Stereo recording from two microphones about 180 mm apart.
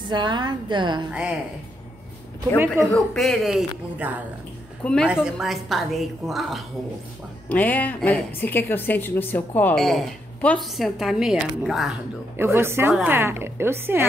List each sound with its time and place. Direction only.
0.1 s a woman's voice: 25° right (ahead or behind)
2.8 s a woman's voice: 5° left (ahead or behind)
12.4 s a woman's voice: 15° right (ahead or behind)